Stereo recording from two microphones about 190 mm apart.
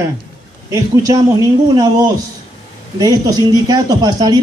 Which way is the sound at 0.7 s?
20° right (ahead or behind).